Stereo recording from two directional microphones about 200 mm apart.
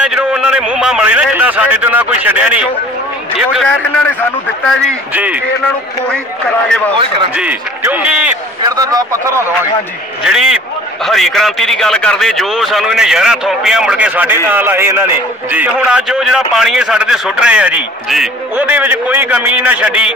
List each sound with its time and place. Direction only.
0.0 s a man's voice: 5° right (ahead or behind)
5.1 s a man's voice: 10° right (ahead or behind)
7.3 s a man's voice: 10° right (ahead or behind)
8.7 s a man's voice: 20° right (ahead or behind)
10.2 s a man's voice: centre (ahead or behind)